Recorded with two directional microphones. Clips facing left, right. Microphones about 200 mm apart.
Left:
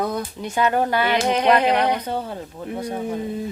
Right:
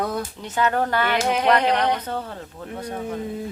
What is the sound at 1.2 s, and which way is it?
Speech, 5° right (ahead or behind).